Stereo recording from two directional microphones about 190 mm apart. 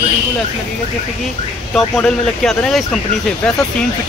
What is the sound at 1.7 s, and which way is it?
Speech, 5° left (ahead or behind).